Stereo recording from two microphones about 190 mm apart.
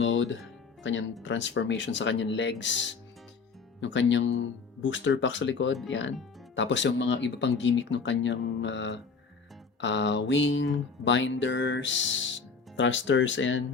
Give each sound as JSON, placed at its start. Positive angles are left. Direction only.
{"t": 0.0, "sound": "music", "side_deg": 90}
{"t": 0.8, "sound": "speech", "side_deg": 85}
{"t": 1.2, "sound": "music", "side_deg": 75}